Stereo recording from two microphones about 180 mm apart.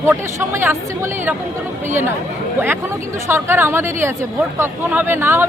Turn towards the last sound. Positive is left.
turn(degrees=-10)  # may be behind; listen again after turning